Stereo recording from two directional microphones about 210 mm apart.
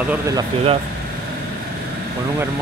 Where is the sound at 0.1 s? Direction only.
15° right (ahead or behind).